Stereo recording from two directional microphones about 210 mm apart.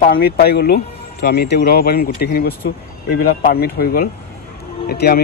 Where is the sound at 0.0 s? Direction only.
45° left (ahead or behind).